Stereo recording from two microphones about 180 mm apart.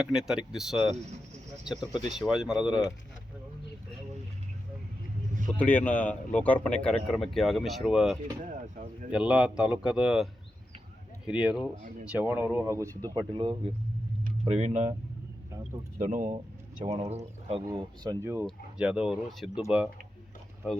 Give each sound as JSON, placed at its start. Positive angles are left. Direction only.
{"t": 0.0, "sound": "speech", "side_deg": -5}
{"t": 2.1, "sound": "speech", "side_deg": -5}
{"t": 5.5, "sound": "speech", "side_deg": 10}
{"t": 8.4, "sound": "a sound", "side_deg": -45}
{"t": 9.1, "sound": "speech", "side_deg": -5}
{"t": 11.3, "sound": "speech", "side_deg": -5}
{"t": 14.4, "sound": "speech", "side_deg": -40}
{"t": 16.0, "sound": "speech", "side_deg": -45}
{"t": 17.7, "sound": "speech", "side_deg": -20}
{"t": 18.4, "sound": "speech", "side_deg": -5}